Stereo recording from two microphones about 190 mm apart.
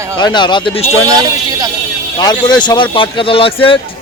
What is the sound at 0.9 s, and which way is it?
Speech, 20° right (ahead or behind).